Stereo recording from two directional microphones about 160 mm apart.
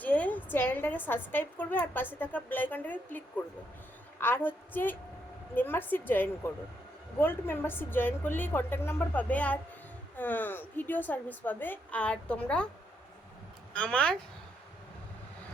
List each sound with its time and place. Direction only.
0.0 s a sound: 10° left (ahead or behind)
0.5 s a woman's voice: 10° left (ahead or behind)
13.7 s a woman's voice: 5° left (ahead or behind)